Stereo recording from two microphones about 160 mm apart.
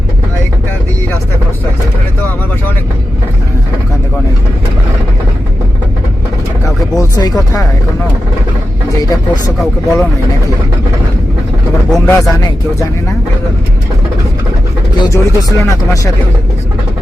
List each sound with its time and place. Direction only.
6.9 s a sound: 25° left (ahead or behind)
9.0 s speech: 20° left (ahead or behind)
9.6 s speech: centre (ahead or behind)
11.9 s speech: centre (ahead or behind)
12.4 s speech: 20° left (ahead or behind)
14.9 s speech: 20° left (ahead or behind)